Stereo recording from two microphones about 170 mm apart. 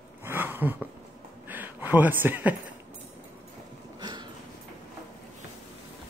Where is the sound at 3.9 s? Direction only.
25° right (ahead or behind).